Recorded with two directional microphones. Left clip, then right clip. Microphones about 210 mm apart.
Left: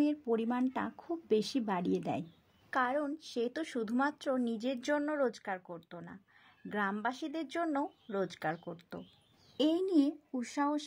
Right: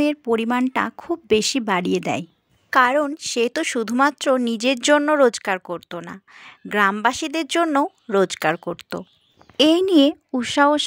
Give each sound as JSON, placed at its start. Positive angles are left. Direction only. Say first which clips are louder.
{"t": 0.0, "sound": "a woman's voice", "louder": "right 12 dB", "side_deg": -25}
{"t": 9.8, "sound": "a woman's voice", "louder": "right 15 dB", "side_deg": -55}
{"t": 10.4, "sound": "speech", "louder": "right 18 dB", "side_deg": -35}